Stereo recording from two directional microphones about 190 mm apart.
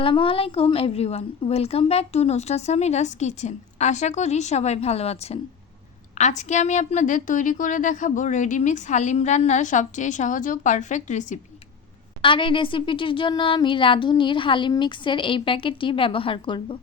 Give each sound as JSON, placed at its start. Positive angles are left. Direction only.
{"t": 0.0, "sound": "a woman's voice", "side_deg": 30}
{"t": 12.2, "sound": "speech", "side_deg": 25}